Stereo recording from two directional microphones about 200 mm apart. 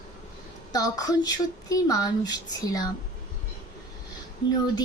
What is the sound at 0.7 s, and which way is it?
Speech, 20° left (ahead or behind).